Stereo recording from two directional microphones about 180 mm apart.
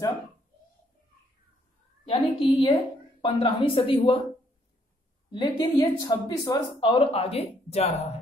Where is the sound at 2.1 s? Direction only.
30° left (ahead or behind).